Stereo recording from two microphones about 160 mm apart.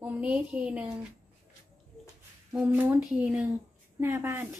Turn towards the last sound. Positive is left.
turn(degrees=-15)  # may be behind; listen again after turning